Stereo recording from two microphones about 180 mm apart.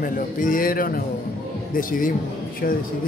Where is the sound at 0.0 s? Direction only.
50° left (ahead or behind).